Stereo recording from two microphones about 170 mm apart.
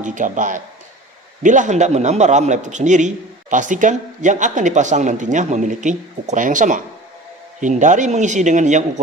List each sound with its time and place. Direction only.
0.0 s a man's voice: 50° right (ahead or behind)